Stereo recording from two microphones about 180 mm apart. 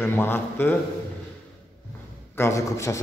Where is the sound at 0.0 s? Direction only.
10° left (ahead or behind).